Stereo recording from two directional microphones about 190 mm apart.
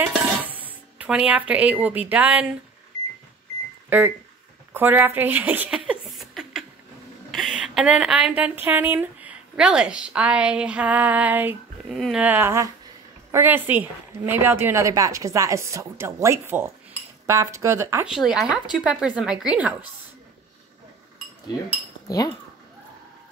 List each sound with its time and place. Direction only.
0.0 s dishes: 10° right (ahead or behind)
3.9 s a woman's voice: 10° right (ahead or behind)
18.0 s speech: 5° right (ahead or behind)
22.0 s speech: 20° left (ahead or behind)